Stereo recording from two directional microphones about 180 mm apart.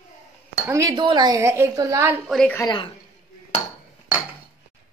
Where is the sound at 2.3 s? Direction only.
5° left (ahead or behind).